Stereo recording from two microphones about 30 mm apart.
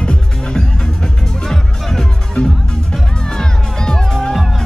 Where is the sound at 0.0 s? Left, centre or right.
Left.